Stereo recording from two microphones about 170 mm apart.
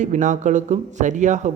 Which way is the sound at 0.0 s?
45° right (ahead or behind).